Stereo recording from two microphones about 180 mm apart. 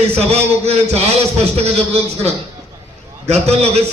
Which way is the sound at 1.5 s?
35° right (ahead or behind).